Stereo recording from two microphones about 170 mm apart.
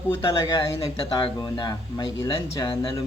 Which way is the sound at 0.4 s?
30° left (ahead or behind).